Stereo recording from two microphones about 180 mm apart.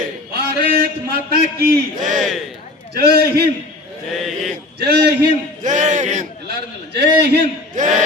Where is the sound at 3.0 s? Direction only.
60° right (ahead or behind).